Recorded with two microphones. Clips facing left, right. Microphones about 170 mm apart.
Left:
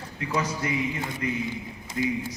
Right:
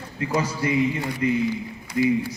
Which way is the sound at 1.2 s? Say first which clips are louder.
Right 8 dB; 25° right (ahead or behind).